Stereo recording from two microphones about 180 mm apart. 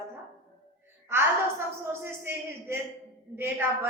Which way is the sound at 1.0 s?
15° right (ahead or behind).